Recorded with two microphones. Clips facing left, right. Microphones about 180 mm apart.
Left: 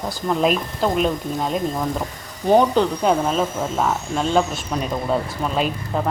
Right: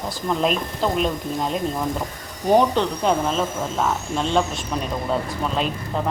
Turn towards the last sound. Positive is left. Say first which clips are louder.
# left 2 dB
turn(degrees=5)  # may be behind; listen again after turning